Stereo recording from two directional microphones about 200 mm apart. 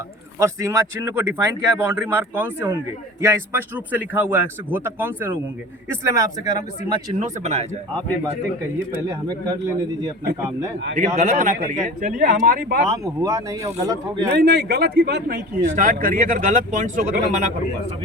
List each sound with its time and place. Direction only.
0.3 s a man's voice: 15° right (ahead or behind)
7.2 s speech: 35° right (ahead or behind)
9.0 s a man's voice: 15° right (ahead or behind)
10.9 s speech: 35° right (ahead or behind)
13.2 s a man's voice: 15° right (ahead or behind)
14.3 s speech: 55° right (ahead or behind)
15.6 s speech: 40° right (ahead or behind)